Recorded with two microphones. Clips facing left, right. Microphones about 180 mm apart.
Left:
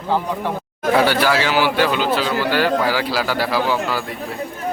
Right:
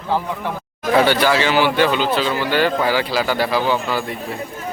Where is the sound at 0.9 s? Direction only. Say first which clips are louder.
Right 1 dB; 5° left (ahead or behind).